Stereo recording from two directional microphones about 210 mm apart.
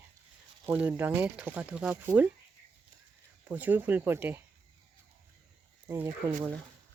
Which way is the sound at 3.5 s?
10° right (ahead or behind).